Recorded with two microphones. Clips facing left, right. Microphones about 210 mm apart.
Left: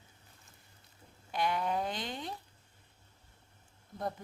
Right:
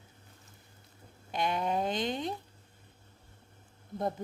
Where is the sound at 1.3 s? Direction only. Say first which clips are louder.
Right 1 dB; 20° right (ahead or behind).